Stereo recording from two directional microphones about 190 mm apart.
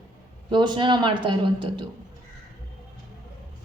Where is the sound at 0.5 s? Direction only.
25° right (ahead or behind).